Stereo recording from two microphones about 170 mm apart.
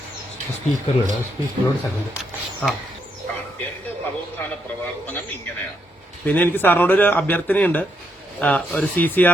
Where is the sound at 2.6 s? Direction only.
10° left (ahead or behind).